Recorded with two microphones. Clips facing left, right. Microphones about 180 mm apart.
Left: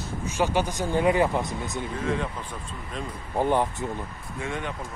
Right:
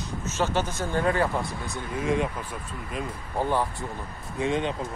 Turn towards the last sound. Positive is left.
turn(degrees=-20)  # may be behind; listen again after turning